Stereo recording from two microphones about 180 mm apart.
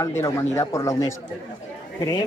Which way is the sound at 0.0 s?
15° left (ahead or behind).